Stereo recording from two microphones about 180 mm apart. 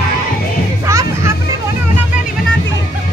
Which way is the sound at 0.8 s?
15° right (ahead or behind).